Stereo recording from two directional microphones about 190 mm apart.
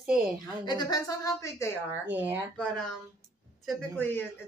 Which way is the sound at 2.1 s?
10° right (ahead or behind).